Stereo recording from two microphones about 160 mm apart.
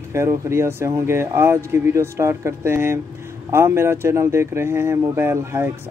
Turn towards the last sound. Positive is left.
turn(degrees=-15)  # may be behind; listen again after turning